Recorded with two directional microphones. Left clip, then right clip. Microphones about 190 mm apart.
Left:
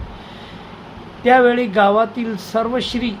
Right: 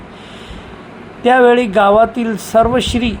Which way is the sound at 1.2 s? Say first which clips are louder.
Right 3 dB; 25° right (ahead or behind).